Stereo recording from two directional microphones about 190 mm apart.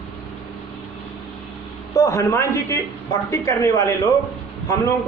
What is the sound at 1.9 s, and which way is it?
A man's voice, 15° left (ahead or behind).